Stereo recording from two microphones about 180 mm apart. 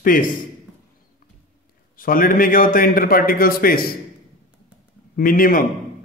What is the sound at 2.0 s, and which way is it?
A man's voice, 50° left (ahead or behind).